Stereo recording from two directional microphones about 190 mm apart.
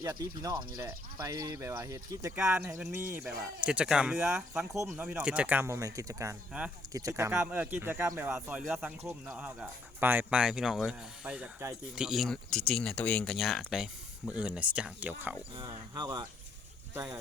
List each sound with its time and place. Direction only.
0.0 s speech: 20° right (ahead or behind)
4.7 s speech: 15° right (ahead or behind)
15.5 s speech: 20° right (ahead or behind)